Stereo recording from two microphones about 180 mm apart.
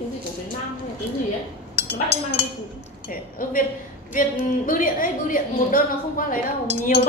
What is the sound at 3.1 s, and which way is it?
A woman's voice, 50° left (ahead or behind).